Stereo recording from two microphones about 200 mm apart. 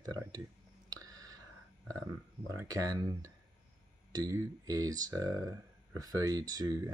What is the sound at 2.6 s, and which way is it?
Speech, 15° right (ahead or behind).